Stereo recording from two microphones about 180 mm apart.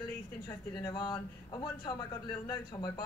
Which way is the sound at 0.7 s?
25° left (ahead or behind).